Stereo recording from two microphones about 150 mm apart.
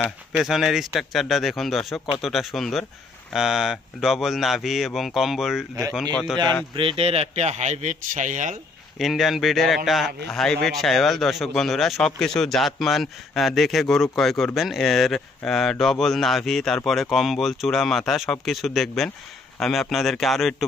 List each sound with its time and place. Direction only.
0.4 s a man's voice: centre (ahead or behind)
6.7 s speech: 40° right (ahead or behind); by 8.5 s 55° right (ahead or behind)
8.9 s a man's voice: centre (ahead or behind)